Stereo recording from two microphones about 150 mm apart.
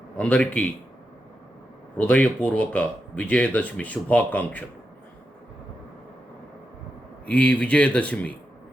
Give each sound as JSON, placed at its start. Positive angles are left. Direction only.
{"t": 0.2, "sound": "speech", "side_deg": 10}
{"t": 2.0, "sound": "speech", "side_deg": 10}
{"t": 7.3, "sound": "speech", "side_deg": 10}